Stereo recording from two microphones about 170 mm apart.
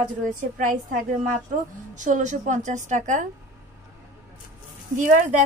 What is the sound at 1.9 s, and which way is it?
Speech, 45° right (ahead or behind).